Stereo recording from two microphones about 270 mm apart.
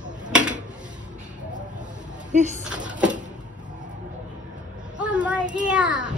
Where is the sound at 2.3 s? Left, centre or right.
Right.